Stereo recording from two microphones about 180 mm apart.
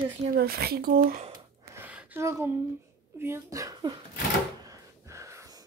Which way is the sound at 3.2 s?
15° right (ahead or behind).